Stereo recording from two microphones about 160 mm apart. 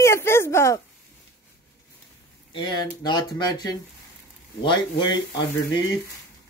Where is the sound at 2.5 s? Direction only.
30° left (ahead or behind).